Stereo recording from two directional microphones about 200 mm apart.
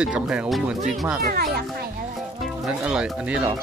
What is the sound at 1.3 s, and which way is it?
Speech, 45° right (ahead or behind).